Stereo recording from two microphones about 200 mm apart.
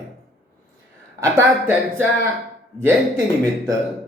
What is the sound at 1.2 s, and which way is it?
Speech, 10° right (ahead or behind).